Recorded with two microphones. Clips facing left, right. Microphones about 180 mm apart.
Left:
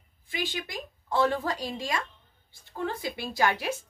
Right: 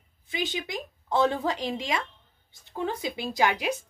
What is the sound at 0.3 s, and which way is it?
A woman's voice, 20° right (ahead or behind).